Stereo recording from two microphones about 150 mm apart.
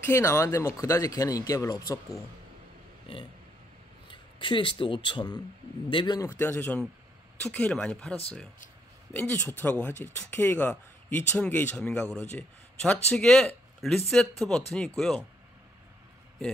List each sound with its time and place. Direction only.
0.1 s speech: 20° left (ahead or behind)
4.1 s speech: 35° left (ahead or behind); by 15.2 s 5° left (ahead or behind)